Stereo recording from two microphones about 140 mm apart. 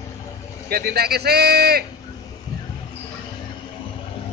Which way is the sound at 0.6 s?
90° right.